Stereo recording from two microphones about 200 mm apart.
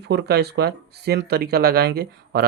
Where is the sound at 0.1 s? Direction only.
55° right (ahead or behind).